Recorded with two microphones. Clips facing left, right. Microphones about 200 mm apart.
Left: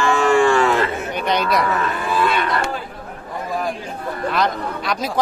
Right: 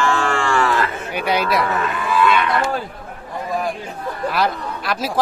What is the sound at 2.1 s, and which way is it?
Speech, 35° left (ahead or behind).